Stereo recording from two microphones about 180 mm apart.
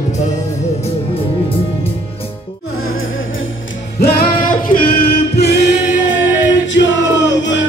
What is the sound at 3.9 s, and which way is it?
Music, 55° left (ahead or behind).